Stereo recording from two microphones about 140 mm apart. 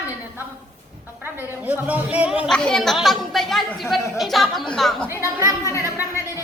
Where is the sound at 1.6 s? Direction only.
10° right (ahead or behind).